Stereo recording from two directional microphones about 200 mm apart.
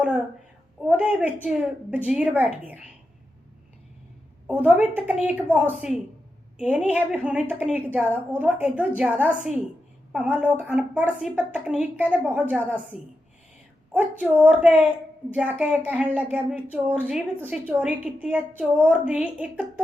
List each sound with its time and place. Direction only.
0.8 s a woman's voice: 5° right (ahead or behind)
4.4 s a woman's voice: 5° right (ahead or behind)